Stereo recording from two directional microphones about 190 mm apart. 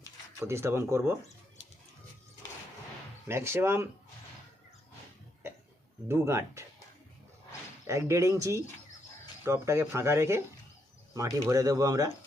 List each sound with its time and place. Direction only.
0.4 s speech: 15° right (ahead or behind)
3.2 s speech: 15° right (ahead or behind)
5.4 s cough: 10° right (ahead or behind)
6.1 s speech: 15° right (ahead or behind)
7.9 s speech: 15° right (ahead or behind)